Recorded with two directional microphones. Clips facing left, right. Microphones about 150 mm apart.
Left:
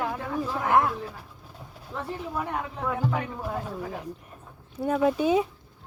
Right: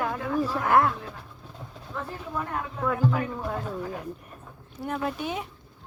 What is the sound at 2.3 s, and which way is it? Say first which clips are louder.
Speech: right 1 dB; 15° left (ahead or behind).